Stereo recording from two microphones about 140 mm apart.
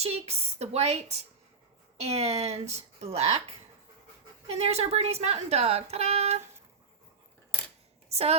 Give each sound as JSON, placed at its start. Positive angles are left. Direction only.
{"t": 0.0, "sound": "speech", "side_deg": -50}
{"t": 8.1, "sound": "a woman's voice", "side_deg": -45}